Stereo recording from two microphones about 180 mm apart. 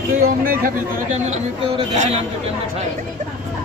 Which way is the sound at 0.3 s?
50° right (ahead or behind).